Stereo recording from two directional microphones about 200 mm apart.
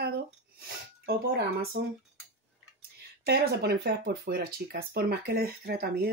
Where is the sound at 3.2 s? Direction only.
55° right (ahead or behind).